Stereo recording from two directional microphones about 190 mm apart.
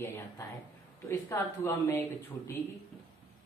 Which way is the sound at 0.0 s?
10° left (ahead or behind).